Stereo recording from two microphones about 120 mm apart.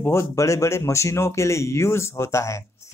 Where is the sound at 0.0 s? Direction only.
20° left (ahead or behind).